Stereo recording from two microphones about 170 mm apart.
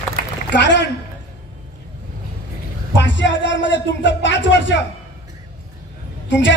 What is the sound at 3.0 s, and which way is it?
Speech, 90° left.